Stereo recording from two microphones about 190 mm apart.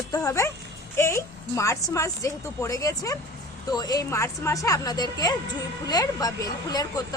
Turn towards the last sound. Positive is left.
turn(degrees=20)  # may be behind; listen again after turning